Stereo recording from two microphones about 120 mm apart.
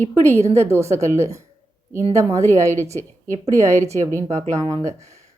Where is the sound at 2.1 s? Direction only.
25° right (ahead or behind).